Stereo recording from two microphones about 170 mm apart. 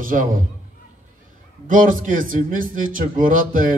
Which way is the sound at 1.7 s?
50° right (ahead or behind).